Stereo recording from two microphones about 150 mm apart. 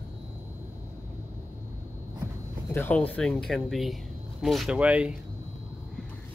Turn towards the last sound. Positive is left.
turn(degrees=-10)  # may be behind; listen again after turning